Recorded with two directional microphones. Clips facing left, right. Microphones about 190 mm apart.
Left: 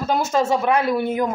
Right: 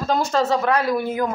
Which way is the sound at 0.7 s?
25° left (ahead or behind).